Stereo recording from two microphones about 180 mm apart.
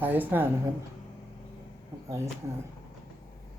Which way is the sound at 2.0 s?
15° right (ahead or behind).